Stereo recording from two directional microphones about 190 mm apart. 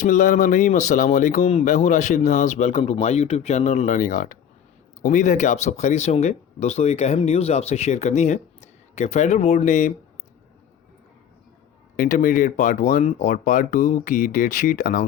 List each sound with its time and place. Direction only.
0.0 s speech: 40° left (ahead or behind)
11.9 s speech: 45° left (ahead or behind)